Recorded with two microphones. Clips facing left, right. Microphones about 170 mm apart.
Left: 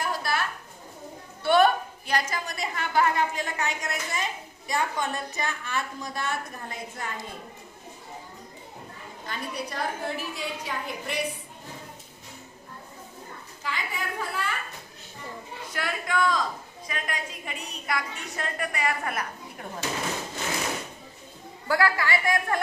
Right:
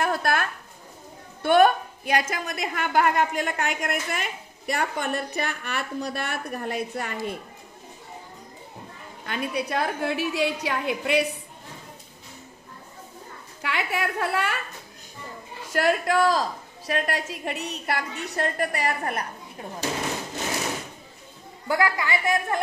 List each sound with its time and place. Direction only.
0.0 s a sound: 60° right (ahead or behind)
1.4 s a woman's voice: 50° right (ahead or behind); by 7.3 s 75° right (ahead or behind)
9.2 s a woman's voice: 65° right (ahead or behind)
13.6 s a woman's voice: 75° right (ahead or behind)
15.7 s a woman's voice: 45° right (ahead or behind)
16.8 s a woman's voice: 75° right (ahead or behind)
17.9 s a woman's voice: 40° right (ahead or behind)
21.6 s a woman's voice: 20° right (ahead or behind)